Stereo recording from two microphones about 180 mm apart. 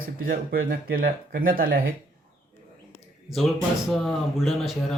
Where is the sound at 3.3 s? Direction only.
Centre (ahead or behind).